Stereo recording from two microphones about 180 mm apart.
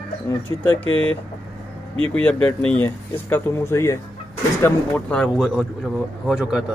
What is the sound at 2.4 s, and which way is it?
Speech, 10° left (ahead or behind).